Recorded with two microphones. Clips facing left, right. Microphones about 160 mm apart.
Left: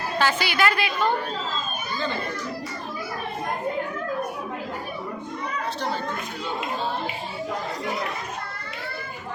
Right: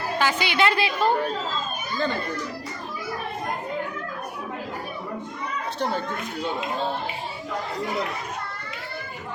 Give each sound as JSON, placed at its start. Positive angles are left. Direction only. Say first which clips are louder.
{"t": 0.2, "sound": "a woman's voice", "louder": "even", "side_deg": -15}